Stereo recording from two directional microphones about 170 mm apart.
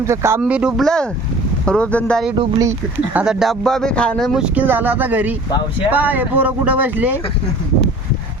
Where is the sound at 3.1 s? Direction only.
5° right (ahead or behind).